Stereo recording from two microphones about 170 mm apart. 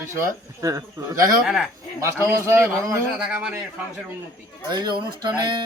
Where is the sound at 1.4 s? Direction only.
5° right (ahead or behind).